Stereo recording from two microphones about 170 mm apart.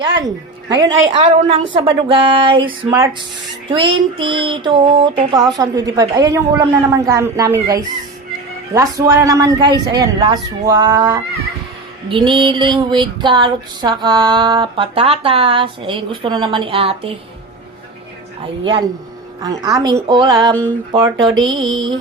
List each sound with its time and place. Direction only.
0.7 s female singing: 25° right (ahead or behind)
3.7 s a sound: 30° right (ahead or behind)
5.3 s a woman's voice: centre (ahead or behind)
5.5 s female singing: 20° right (ahead or behind)
18.6 s female singing: 30° right (ahead or behind)